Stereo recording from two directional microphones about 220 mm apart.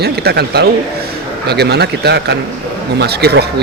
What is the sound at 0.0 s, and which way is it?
Speech, 45° right (ahead or behind).